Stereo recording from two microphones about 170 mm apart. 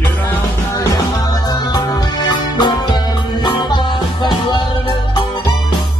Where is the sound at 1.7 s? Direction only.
25° left (ahead or behind).